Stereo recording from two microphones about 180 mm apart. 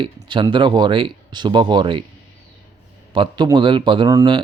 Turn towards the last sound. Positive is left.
turn(degrees=-20)  # may be behind; listen again after turning